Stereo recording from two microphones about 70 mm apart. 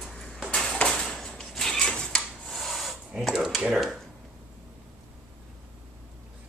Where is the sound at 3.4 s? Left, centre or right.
Centre.